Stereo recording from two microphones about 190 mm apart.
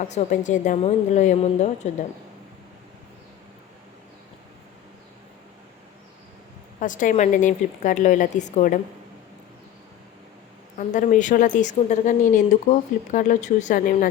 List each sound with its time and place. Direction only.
0.1 s a woman's voice: 40° left (ahead or behind)
6.7 s a woman's voice: 40° left (ahead or behind)
10.8 s a woman's voice: 40° left (ahead or behind)